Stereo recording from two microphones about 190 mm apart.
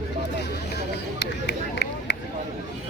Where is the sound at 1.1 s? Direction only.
60° left (ahead or behind).